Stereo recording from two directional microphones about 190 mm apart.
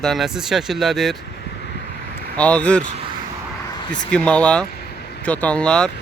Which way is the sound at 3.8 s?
25° left (ahead or behind).